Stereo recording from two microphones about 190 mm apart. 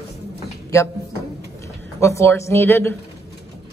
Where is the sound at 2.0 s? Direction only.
15° left (ahead or behind).